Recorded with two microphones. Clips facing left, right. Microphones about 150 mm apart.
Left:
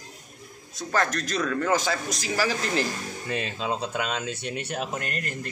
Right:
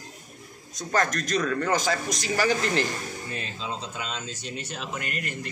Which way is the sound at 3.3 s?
65° left (ahead or behind).